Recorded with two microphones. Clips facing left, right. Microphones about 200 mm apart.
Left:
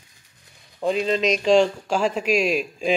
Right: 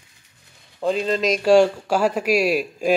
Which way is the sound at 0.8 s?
Centre (ahead or behind).